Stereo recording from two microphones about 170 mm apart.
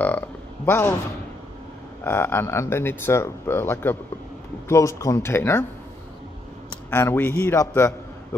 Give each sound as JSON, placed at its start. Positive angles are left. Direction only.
{"t": 0.7, "sound": "speech", "side_deg": 15}
{"t": 2.0, "sound": "speech", "side_deg": 15}
{"t": 6.9, "sound": "a man's voice", "side_deg": 15}